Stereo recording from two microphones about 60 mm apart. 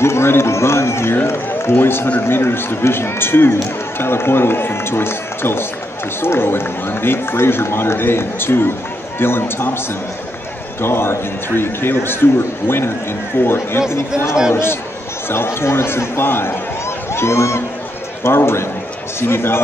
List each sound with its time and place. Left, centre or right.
0.0 s run: left
1.2 s a man's voice: left
10.8 s a man's voice: left